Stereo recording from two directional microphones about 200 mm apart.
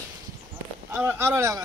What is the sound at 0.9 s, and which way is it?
Speech, 10° right (ahead or behind).